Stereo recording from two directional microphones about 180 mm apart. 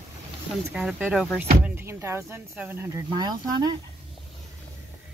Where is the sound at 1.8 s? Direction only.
15° right (ahead or behind).